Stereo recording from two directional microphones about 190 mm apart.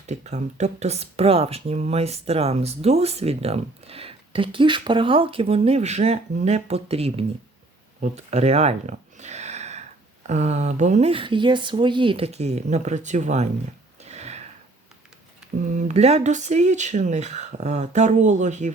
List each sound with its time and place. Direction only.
0.1 s speech: 35° right (ahead or behind)
14.0 s a sound: 35° right (ahead or behind)
15.7 s speech: 40° right (ahead or behind)